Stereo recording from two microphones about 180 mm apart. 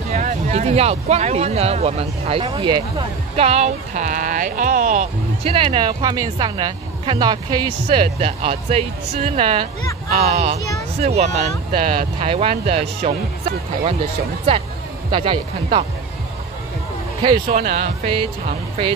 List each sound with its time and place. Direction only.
0.1 s speech: 40° right (ahead or behind)
17.5 s speech: 40° right (ahead or behind)